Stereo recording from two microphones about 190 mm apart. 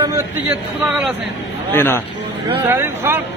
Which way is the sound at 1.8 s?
10° left (ahead or behind).